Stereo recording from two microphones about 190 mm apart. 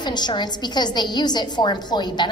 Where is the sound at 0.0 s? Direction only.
20° left (ahead or behind).